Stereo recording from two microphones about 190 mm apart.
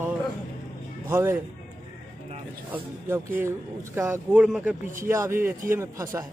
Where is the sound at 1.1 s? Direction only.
10° right (ahead or behind).